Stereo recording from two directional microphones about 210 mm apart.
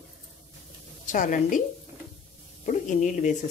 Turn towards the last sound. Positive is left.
turn(degrees=35)  # may be behind; listen again after turning